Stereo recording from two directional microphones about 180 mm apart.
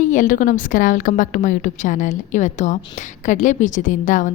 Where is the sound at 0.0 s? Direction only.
45° left (ahead or behind).